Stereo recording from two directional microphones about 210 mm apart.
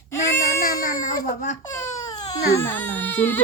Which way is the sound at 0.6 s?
40° left (ahead or behind).